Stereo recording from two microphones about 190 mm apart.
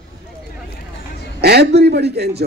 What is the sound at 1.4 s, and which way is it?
A man's voice, 60° right (ahead or behind).